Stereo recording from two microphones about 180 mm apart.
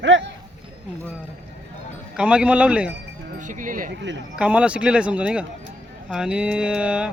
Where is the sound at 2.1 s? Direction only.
5° right (ahead or behind).